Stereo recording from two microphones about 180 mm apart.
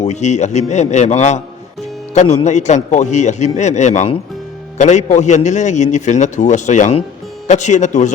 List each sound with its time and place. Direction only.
0.0 s a man's voice: 40° left (ahead or behind)